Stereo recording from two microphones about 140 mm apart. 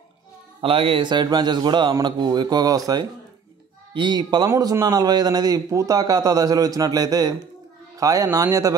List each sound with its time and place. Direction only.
0.6 s a man's voice: 40° right (ahead or behind); by 8.7 s 25° right (ahead or behind)